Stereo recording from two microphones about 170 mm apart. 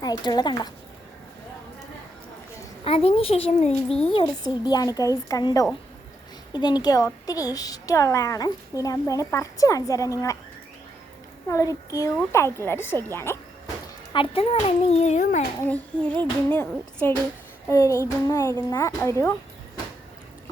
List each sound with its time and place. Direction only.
0.0 s a woman's voice: 25° left (ahead or behind)
2.8 s a child's voice: 35° left (ahead or behind)
3.7 s speech: 5° left (ahead or behind)
4.1 s a woman's voice: 25° left (ahead or behind)
11.4 s a woman's voice: 20° left (ahead or behind)
14.1 s a child's voice: 30° left (ahead or behind)
15.6 s a woman's voice: 10° left (ahead or behind)